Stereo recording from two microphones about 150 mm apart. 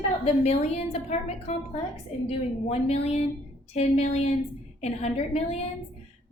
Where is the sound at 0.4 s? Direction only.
45° left (ahead or behind).